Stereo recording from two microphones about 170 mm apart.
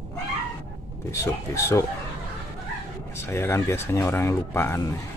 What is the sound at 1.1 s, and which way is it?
Speech, 15° left (ahead or behind).